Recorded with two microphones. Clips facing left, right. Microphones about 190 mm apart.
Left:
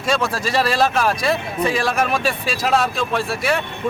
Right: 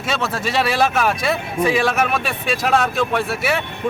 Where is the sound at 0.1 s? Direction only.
Centre (ahead or behind).